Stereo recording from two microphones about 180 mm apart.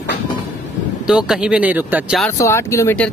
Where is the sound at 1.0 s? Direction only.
5° right (ahead or behind).